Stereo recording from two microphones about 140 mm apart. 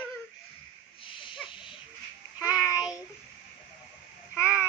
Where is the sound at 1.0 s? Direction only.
35° left (ahead or behind).